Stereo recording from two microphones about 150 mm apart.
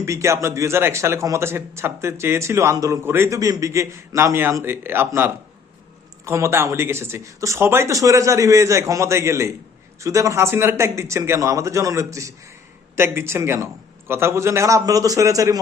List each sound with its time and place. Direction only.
0.0 s a man's voice: 20° right (ahead or behind)